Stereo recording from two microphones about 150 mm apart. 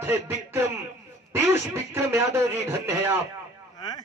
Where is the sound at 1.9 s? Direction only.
20° right (ahead or behind).